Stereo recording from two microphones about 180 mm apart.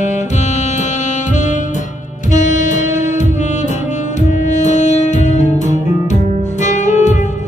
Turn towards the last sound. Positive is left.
turn(degrees=40)  # may be behind; listen again after turning